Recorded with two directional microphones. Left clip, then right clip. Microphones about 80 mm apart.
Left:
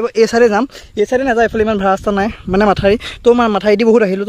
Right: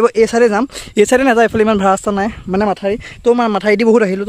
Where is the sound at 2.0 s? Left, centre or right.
Centre.